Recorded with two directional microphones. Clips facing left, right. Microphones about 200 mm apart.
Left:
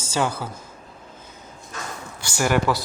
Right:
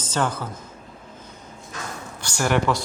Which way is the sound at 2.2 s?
5° left (ahead or behind).